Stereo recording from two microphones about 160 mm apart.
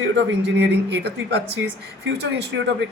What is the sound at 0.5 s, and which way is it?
Speech, 90° right.